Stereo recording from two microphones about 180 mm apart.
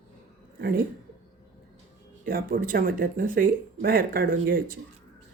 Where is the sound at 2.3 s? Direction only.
55° right (ahead or behind).